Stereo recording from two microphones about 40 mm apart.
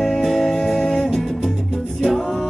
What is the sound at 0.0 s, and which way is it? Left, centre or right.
Music, centre.